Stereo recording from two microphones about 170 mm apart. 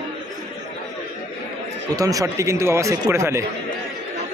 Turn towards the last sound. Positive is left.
turn(degrees=-15)  # may be behind; listen again after turning